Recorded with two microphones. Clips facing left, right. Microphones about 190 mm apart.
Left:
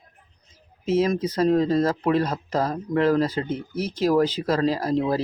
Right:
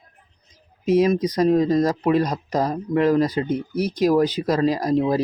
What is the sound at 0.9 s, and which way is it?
Speech, 15° right (ahead or behind).